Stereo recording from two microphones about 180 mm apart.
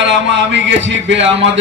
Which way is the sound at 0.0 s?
90° right.